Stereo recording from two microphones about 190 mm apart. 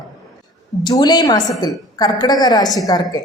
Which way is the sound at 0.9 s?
20° left (ahead or behind).